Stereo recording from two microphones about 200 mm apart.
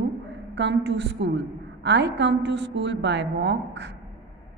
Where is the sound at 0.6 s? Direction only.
60° right (ahead or behind).